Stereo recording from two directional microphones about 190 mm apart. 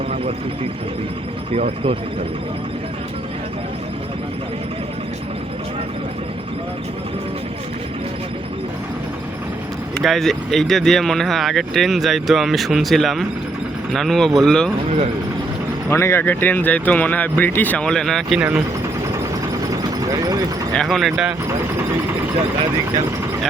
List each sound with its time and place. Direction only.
1.5 s speech: 30° right (ahead or behind)
10.0 s speech: centre (ahead or behind)
15.9 s speech: 15° left (ahead or behind); by 18.5 s 5° right (ahead or behind)
20.1 s clip-clop: 20° right (ahead or behind)
20.7 s speech: centre (ahead or behind)